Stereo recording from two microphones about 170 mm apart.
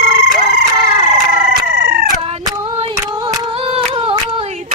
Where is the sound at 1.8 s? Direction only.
65° right (ahead or behind).